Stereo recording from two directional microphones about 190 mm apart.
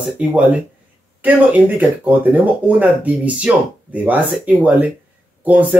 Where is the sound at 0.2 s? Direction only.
5° right (ahead or behind).